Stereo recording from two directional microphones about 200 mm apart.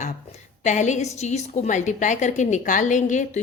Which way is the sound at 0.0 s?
35° left (ahead or behind).